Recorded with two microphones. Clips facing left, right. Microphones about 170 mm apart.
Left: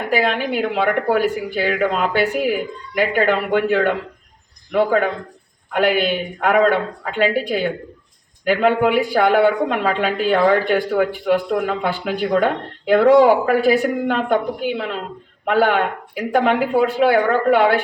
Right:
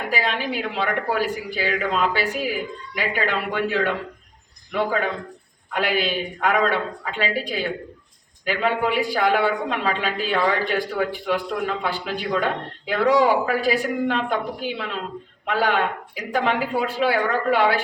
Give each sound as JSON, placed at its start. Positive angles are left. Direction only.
{"t": 0.1, "sound": "a woman's voice", "side_deg": 55}